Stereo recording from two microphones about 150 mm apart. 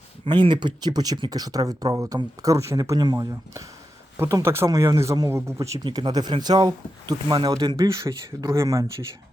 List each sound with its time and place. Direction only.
0.3 s speech: 30° right (ahead or behind)